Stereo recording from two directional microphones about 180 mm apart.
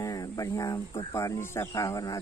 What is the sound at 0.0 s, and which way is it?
Speech, 20° left (ahead or behind).